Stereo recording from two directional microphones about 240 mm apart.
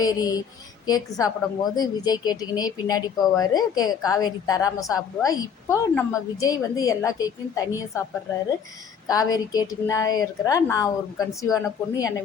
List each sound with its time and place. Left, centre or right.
0.0 s a woman's voice: centre
9.0 s a woman's voice: centre